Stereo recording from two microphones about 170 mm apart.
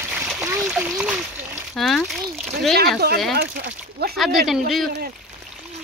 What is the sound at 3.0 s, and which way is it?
Speech, 70° right (ahead or behind).